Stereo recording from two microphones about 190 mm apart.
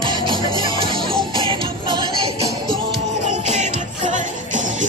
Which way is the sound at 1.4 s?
25° right (ahead or behind).